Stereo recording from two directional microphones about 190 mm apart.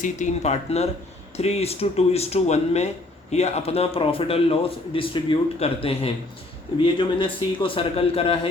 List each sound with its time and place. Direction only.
0.0 s a man's voice: 40° left (ahead or behind)